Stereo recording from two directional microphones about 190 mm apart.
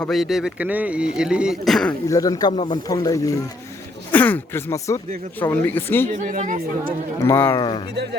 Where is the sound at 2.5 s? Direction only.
35° left (ahead or behind).